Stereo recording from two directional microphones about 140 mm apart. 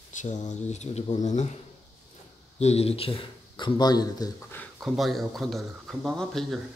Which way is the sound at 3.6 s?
30° left (ahead or behind).